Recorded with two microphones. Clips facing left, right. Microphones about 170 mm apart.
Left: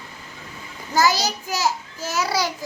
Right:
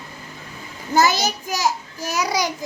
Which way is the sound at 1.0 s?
20° right (ahead or behind).